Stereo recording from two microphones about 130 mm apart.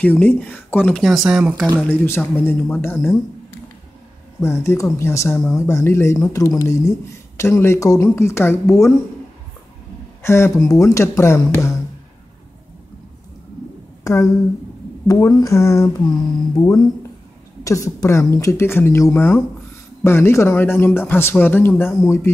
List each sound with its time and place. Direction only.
0.0 s speech: 10° left (ahead or behind)
0.9 s speech: centre (ahead or behind)
1.9 s speech: 20° left (ahead or behind)
4.4 s speech: 20° left (ahead or behind)
10.2 s speech: 20° left (ahead or behind)
14.0 s speech: 25° left (ahead or behind)